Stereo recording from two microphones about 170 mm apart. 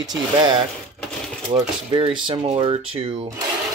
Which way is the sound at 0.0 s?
25° right (ahead or behind).